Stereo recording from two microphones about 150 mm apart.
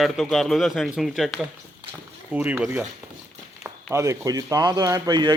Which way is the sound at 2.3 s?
10° right (ahead or behind).